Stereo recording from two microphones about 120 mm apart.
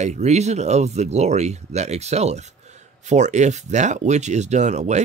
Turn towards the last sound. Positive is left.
turn(degrees=-75)  # may be behind; listen again after turning